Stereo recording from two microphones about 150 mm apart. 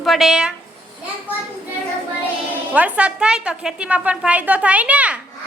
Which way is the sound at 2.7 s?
10° right (ahead or behind).